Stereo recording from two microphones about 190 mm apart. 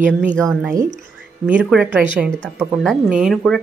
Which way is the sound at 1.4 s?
5° right (ahead or behind).